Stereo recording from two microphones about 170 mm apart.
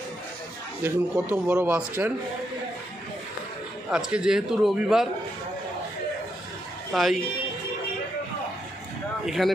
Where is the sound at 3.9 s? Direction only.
5° right (ahead or behind).